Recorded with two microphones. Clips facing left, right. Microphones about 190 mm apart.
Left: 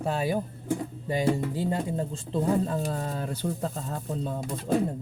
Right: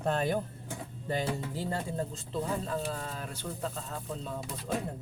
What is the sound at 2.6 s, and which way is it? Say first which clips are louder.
Speech: left 5 dB; 40° left (ahead or behind).